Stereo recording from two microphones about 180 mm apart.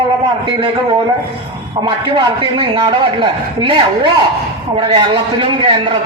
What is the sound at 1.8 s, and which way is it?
A man's voice, 25° right (ahead or behind).